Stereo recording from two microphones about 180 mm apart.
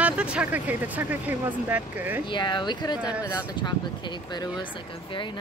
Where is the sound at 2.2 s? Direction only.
25° left (ahead or behind).